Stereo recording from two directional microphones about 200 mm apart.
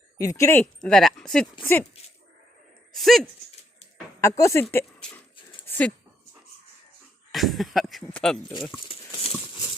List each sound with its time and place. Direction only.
0.2 s speech: 15° left (ahead or behind)
2.9 s speech: centre (ahead or behind)
4.2 s speech: 15° left (ahead or behind)
5.6 s a sound: 10° left (ahead or behind)
7.3 s speech: centre (ahead or behind)